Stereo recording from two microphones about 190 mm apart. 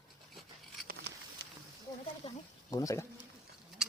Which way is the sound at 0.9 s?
60° right (ahead or behind).